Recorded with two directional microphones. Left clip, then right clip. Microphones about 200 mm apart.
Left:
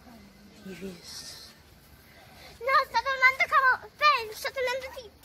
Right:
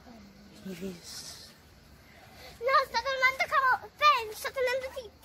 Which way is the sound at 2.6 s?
55° right (ahead or behind).